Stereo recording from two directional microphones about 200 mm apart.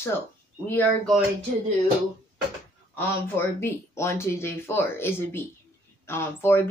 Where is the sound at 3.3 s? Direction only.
10° left (ahead or behind).